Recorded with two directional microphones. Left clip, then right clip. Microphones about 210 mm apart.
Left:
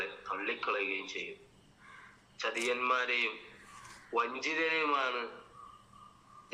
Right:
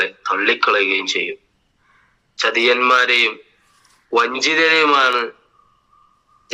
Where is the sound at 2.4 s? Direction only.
50° right (ahead or behind).